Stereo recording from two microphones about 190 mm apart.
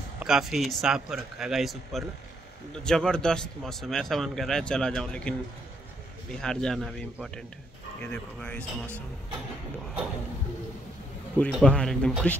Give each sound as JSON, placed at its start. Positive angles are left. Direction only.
{"t": 0.2, "sound": "a man's voice", "side_deg": 0}
{"t": 6.4, "sound": "a man's voice", "side_deg": 5}
{"t": 11.3, "sound": "a man's voice", "side_deg": 5}